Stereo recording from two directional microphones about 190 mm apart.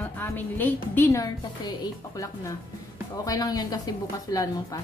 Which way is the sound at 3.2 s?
20° left (ahead or behind).